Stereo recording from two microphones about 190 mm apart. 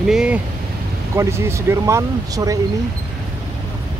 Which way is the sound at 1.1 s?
15° right (ahead or behind).